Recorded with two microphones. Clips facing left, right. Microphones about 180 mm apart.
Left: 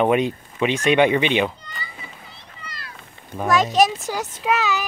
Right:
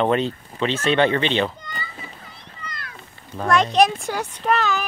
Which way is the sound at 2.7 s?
55° right (ahead or behind).